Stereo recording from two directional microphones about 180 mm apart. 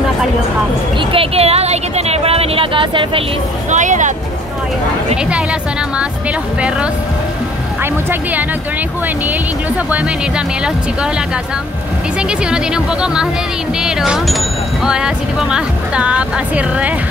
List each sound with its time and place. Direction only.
1.1 s a sound: 30° right (ahead or behind)
3.7 s speech: 45° right (ahead or behind)
5.1 s speech: 5° right (ahead or behind)
7.8 s speech: 10° right (ahead or behind)
9.8 s speech: 5° right (ahead or behind)
12.2 s speech: 5° right (ahead or behind)